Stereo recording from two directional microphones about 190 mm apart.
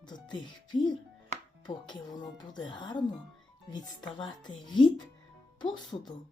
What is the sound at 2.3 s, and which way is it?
Speech, 20° left (ahead or behind).